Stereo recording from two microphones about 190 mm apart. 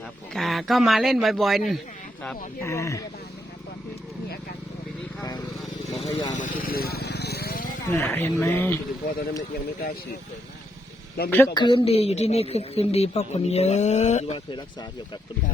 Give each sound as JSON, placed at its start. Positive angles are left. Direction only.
{"t": 0.3, "sound": "speech", "side_deg": 0}
{"t": 2.6, "sound": "speech", "side_deg": 15}
{"t": 5.8, "sound": "vehicle", "side_deg": 35}
{"t": 7.9, "sound": "speech", "side_deg": 10}
{"t": 11.3, "sound": "speech", "side_deg": 10}
{"t": 11.5, "sound": "a woman's voice", "side_deg": 25}